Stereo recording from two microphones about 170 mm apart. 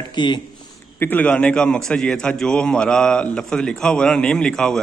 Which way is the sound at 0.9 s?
10° left (ahead or behind).